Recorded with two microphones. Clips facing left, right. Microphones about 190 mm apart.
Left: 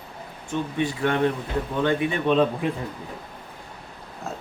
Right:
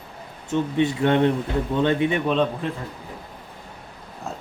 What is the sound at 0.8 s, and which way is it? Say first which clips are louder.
Speech: right 3 dB; 20° right (ahead or behind).